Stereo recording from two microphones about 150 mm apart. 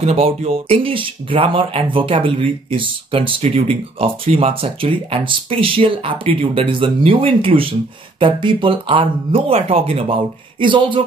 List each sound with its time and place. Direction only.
0.0 s speech: 45° right (ahead or behind)